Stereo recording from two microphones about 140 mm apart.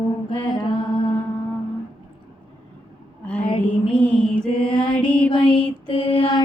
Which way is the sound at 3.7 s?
10° left (ahead or behind).